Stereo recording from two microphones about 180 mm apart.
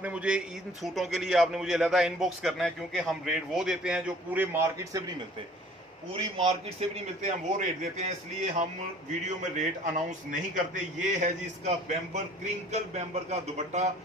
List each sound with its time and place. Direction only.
0.0 s a man's voice: 5° right (ahead or behind)
6.1 s a man's voice: 35° right (ahead or behind)
9.4 s a man's voice: 45° right (ahead or behind)